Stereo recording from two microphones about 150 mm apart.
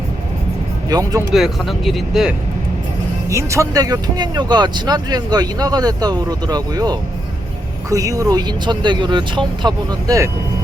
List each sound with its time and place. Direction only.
0.9 s speech: 25° right (ahead or behind)
1.3 s speech: centre (ahead or behind)
3.2 s speech: 20° right (ahead or behind)